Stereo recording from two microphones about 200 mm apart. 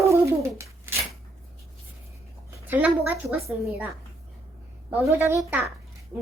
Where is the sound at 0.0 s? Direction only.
15° right (ahead or behind).